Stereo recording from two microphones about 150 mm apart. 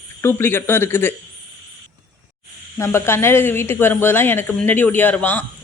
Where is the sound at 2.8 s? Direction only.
15° left (ahead or behind).